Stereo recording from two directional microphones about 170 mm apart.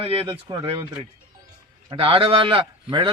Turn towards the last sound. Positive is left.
turn(degrees=-30)  # may be behind; listen again after turning